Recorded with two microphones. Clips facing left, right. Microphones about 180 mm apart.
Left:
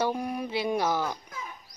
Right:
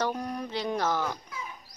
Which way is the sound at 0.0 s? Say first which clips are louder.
Left 2 dB; 10° left (ahead or behind).